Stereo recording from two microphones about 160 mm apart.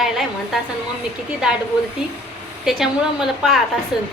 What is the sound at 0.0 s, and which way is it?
Speech, centre (ahead or behind).